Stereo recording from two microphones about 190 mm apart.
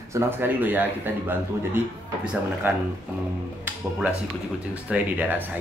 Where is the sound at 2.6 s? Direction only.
10° right (ahead or behind).